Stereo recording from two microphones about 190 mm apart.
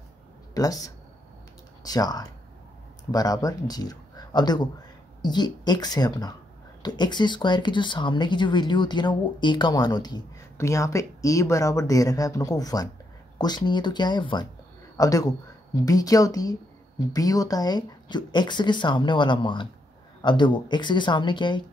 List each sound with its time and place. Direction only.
0.6 s speech: 20° left (ahead or behind)